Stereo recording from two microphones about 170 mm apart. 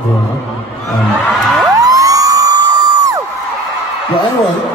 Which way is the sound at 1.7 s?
20° right (ahead or behind).